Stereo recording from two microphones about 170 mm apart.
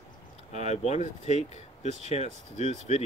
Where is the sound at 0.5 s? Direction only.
40° left (ahead or behind).